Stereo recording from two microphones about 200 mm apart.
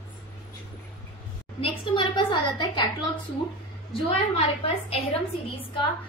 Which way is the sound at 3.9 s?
30° left (ahead or behind).